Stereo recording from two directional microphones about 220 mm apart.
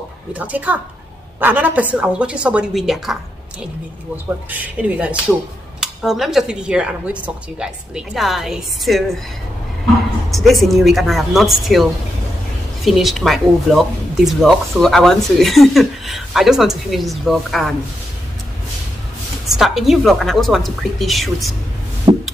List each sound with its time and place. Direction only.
0.3 s speech: 5° right (ahead or behind)
4.5 s speech: 5° right (ahead or behind)
10.3 s speech: centre (ahead or behind)
19.5 s speech: centre (ahead or behind)
22.1 s music: 25° right (ahead or behind)